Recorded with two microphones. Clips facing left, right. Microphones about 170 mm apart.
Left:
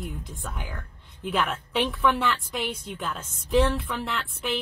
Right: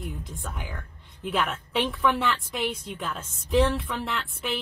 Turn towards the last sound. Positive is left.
turn(degrees=0)  # may be behind; listen again after turning